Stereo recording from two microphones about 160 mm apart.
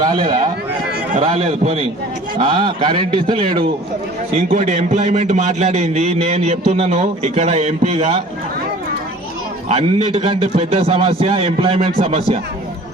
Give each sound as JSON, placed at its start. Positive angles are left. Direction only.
{"t": 0.0, "sound": "speech", "side_deg": -25}
{"t": 1.4, "sound": "a man's voice", "side_deg": -45}
{"t": 2.4, "sound": "a man's voice", "side_deg": -30}
{"t": 4.4, "sound": "a man's voice", "side_deg": -50}
{"t": 9.6, "sound": "a man's voice", "side_deg": -40}